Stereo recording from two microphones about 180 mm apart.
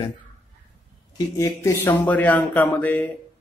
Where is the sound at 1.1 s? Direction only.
20° left (ahead or behind).